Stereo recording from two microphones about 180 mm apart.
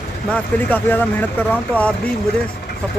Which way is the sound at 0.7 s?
10° left (ahead or behind).